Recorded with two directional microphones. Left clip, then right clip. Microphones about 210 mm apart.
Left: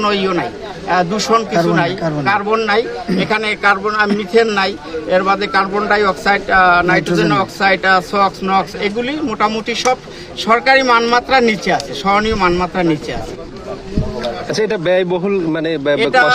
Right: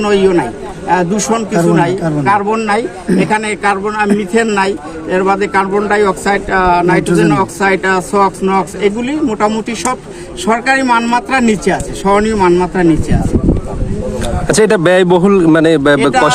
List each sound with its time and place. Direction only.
0.0 s a man's voice: centre (ahead or behind)
14.4 s a man's voice: 45° right (ahead or behind)